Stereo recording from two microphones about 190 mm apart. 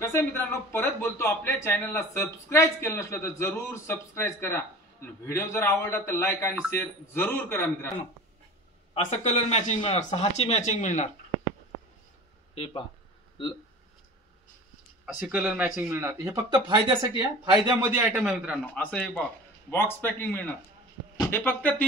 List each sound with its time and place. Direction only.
0.0 s a man's voice: 10° left (ahead or behind)
8.9 s speech: 35° left (ahead or behind)
12.5 s speech: 30° left (ahead or behind)
15.1 s a man's voice: 5° right (ahead or behind)